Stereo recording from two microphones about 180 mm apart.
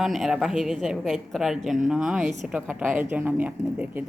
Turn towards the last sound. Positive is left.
turn(degrees=-10)  # may be behind; listen again after turning